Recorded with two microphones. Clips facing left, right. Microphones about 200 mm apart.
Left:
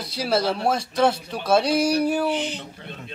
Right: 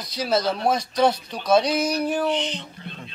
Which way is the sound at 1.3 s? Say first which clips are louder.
Even; 5° left (ahead or behind).